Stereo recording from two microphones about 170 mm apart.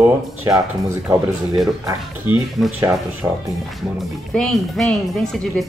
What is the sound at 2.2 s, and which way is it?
Speech, 5° right (ahead or behind).